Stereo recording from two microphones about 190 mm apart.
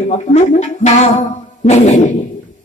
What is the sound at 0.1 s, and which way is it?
Speech, 40° left (ahead or behind).